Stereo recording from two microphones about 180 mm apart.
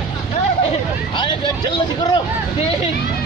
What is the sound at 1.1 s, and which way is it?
Vehicle, 25° left (ahead or behind).